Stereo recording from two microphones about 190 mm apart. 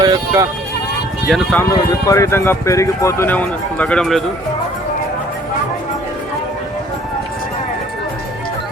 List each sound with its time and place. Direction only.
0.0 s speech: 20° right (ahead or behind)
1.3 s speech: 5° left (ahead or behind)
2.0 s speech: 15° left (ahead or behind)